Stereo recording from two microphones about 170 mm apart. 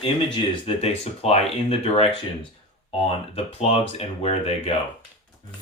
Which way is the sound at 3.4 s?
35° left (ahead or behind).